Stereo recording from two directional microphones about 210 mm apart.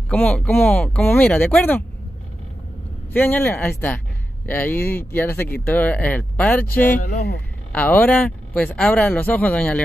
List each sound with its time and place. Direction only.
0.1 s speech: 5° left (ahead or behind)
3.1 s speech: 10° left (ahead or behind)
6.9 s speech: 40° left (ahead or behind)
7.7 s speech: 10° left (ahead or behind)